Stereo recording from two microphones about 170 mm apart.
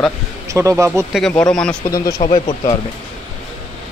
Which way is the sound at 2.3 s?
25° left (ahead or behind).